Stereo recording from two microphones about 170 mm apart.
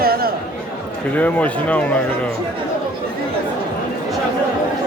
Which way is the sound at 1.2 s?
10° left (ahead or behind).